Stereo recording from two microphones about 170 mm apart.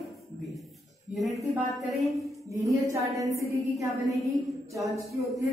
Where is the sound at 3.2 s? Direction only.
20° right (ahead or behind).